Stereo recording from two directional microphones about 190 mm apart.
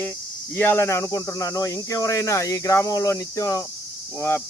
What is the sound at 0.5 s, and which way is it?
Speech, 10° left (ahead or behind).